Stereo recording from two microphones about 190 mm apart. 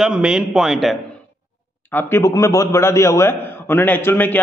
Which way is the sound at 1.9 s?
15° left (ahead or behind).